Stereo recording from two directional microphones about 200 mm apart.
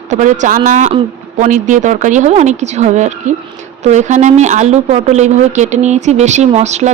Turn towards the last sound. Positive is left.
turn(degrees=-35)  # may be behind; listen again after turning